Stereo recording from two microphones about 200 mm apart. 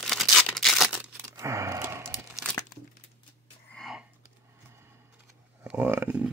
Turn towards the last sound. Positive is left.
turn(degrees=-10)  # may be behind; listen again after turning